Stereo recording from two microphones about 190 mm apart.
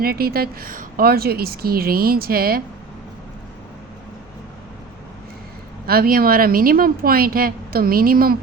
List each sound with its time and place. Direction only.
0.0 s a woman's voice: 55° right (ahead or behind)
5.8 s a woman's voice: 50° right (ahead or behind)